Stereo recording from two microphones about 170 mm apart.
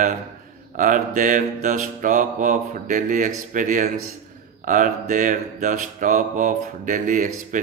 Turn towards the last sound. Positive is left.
turn(degrees=-50)  # may be behind; listen again after turning